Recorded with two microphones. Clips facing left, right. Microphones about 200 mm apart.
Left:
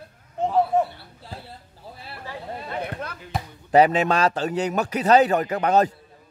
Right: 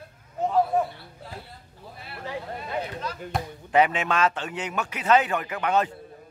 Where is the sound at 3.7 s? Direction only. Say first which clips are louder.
Left 5 dB; 35° left (ahead or behind).